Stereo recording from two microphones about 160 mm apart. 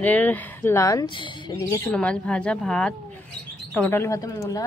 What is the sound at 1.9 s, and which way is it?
A woman's voice, 5° left (ahead or behind).